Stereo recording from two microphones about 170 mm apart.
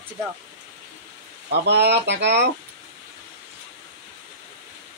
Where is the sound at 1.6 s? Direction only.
80° right.